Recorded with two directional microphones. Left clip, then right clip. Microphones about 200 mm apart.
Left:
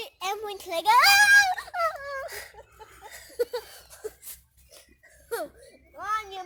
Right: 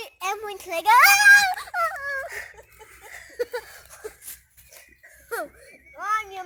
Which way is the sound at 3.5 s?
15° left (ahead or behind).